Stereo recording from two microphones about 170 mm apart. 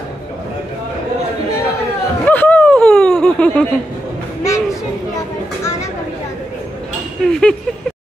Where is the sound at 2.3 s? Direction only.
10° left (ahead or behind).